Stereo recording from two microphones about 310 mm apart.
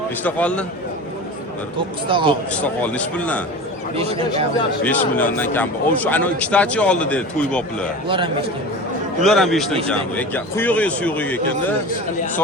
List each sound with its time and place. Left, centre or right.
0.2 s a man's voice: centre
2.0 s a man's voice: centre
2.6 s a man's voice: centre
3.9 s speech: centre
4.8 s a man's voice: centre
8.0 s a man's voice: centre
9.2 s a man's voice: centre